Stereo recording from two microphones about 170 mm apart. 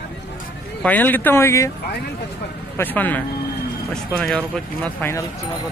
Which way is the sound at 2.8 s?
10° left (ahead or behind).